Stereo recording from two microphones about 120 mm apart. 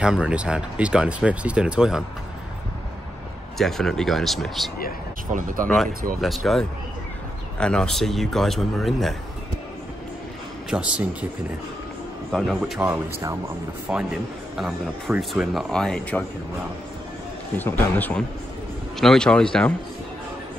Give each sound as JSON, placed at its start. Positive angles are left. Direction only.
{"t": 0.0, "sound": "speech", "side_deg": -5}
{"t": 3.5, "sound": "speech", "side_deg": 5}
{"t": 5.7, "sound": "speech", "side_deg": 0}
{"t": 10.7, "sound": "speech", "side_deg": -10}
{"t": 12.3, "sound": "a man's voice", "side_deg": 5}
{"t": 17.6, "sound": "a man's voice", "side_deg": 15}
{"t": 18.9, "sound": "a man's voice", "side_deg": 5}